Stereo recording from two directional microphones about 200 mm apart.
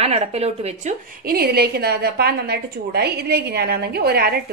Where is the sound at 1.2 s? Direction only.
50° right (ahead or behind).